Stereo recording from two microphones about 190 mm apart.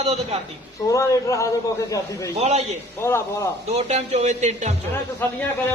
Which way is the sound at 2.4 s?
35° right (ahead or behind).